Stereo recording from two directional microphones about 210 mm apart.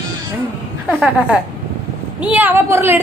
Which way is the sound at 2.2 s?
10° right (ahead or behind).